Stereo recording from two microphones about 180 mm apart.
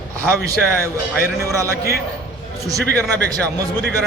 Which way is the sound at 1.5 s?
15° right (ahead or behind).